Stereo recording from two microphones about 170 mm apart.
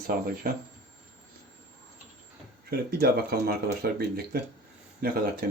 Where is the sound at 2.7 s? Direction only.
65° right (ahead or behind).